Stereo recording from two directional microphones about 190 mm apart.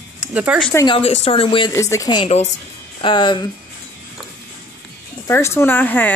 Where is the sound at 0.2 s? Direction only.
5° right (ahead or behind).